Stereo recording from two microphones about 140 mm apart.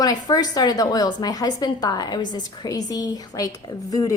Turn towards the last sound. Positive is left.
turn(degrees=25)  # may be behind; listen again after turning